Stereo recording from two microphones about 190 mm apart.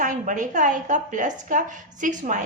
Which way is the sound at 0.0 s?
45° right (ahead or behind).